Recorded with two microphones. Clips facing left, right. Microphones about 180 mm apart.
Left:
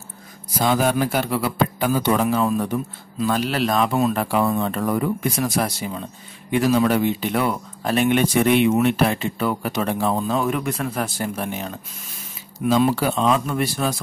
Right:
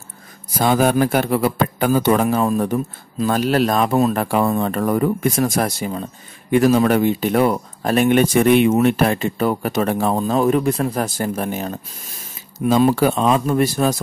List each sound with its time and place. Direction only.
0.6 s speech: 50° right (ahead or behind)